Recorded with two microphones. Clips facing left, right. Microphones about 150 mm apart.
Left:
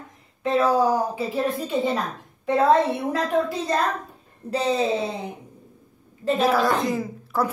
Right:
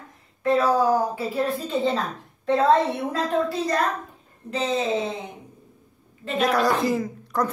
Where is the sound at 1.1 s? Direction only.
20° left (ahead or behind).